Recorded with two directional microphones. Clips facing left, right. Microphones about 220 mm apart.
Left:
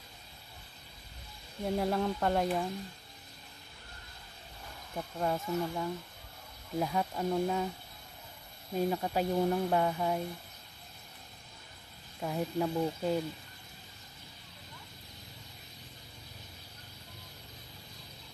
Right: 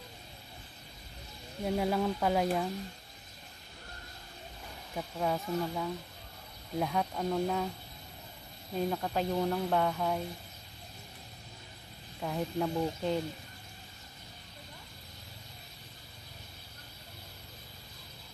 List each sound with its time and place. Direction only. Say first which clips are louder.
1.6 s speech: right 1 dB; centre (ahead or behind)
4.9 s speech: even; centre (ahead or behind)
8.7 s speech: left 1 dB; 5° left (ahead or behind)
12.2 s speech: left 1 dB; 5° left (ahead or behind)